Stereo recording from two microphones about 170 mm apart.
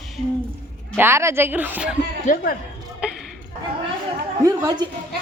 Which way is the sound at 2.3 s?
50° left (ahead or behind).